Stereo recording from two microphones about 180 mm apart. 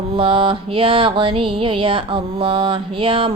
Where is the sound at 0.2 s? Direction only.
30° right (ahead or behind).